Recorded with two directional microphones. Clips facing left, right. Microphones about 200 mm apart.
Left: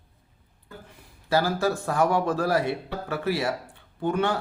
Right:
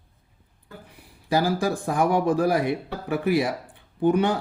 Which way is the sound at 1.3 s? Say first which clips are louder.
Right 1 dB; 15° right (ahead or behind).